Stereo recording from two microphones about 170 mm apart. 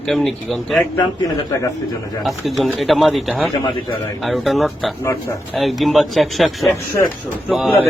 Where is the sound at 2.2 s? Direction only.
Centre (ahead or behind).